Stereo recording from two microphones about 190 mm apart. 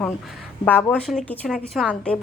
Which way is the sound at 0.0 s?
Centre (ahead or behind).